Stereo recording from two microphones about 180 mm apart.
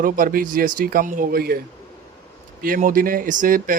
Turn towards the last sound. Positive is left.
turn(degrees=-50)  # may be behind; listen again after turning